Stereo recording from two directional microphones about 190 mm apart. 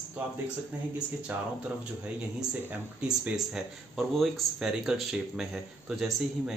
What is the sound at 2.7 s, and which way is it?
Speech, 5° right (ahead or behind).